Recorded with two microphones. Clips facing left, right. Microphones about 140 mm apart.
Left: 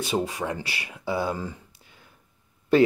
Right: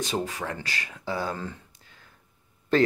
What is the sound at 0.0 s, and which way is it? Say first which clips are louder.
Speech: left 3 dB; 10° left (ahead or behind).